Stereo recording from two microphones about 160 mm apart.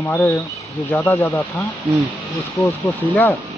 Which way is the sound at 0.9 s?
15° left (ahead or behind).